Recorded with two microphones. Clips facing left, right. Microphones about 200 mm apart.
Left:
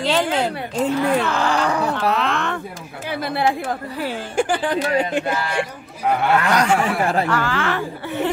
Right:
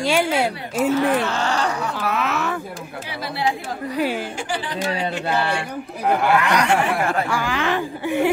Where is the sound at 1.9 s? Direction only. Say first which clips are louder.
Left 3 dB; 5° right (ahead or behind).